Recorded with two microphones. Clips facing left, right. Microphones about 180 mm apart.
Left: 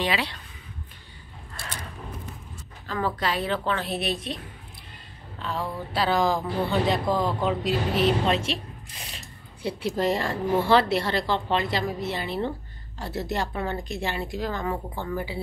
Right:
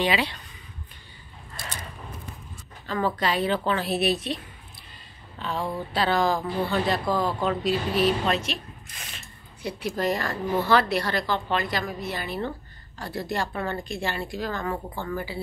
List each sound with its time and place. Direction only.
0.0 s a woman's voice: centre (ahead or behind)
1.6 s a sound: 10° right (ahead or behind)
3.2 s a woman's voice: centre (ahead or behind)
5.4 s a woman's voice: centre (ahead or behind); by 15.4 s 20° left (ahead or behind)